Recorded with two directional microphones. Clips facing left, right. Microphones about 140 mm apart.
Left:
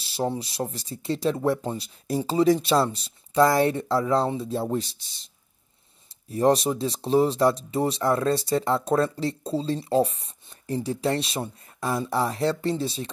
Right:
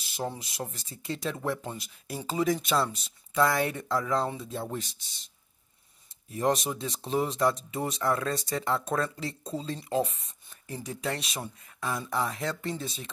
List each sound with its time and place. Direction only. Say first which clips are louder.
0.0 s speech: left 7 dB; 30° left (ahead or behind)
6.3 s speech: left 7 dB; 35° left (ahead or behind)